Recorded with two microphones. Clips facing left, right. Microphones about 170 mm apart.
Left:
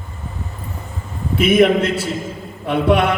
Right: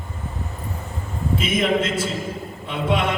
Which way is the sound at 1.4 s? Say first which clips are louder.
Left 9 dB; 65° left (ahead or behind).